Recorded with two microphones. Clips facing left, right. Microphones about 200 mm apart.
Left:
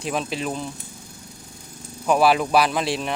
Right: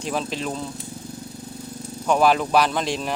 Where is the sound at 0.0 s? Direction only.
Centre (ahead or behind).